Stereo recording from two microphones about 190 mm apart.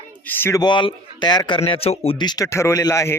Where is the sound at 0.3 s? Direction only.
10° left (ahead or behind).